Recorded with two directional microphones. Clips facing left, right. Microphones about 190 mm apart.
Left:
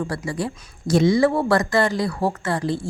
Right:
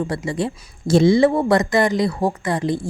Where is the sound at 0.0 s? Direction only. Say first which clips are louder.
Right 3 dB; 20° right (ahead or behind).